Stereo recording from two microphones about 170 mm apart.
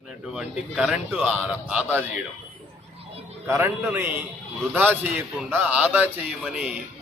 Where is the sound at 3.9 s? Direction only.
15° right (ahead or behind).